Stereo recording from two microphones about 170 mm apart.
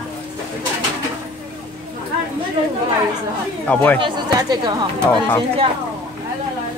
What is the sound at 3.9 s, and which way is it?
Speech, 25° right (ahead or behind).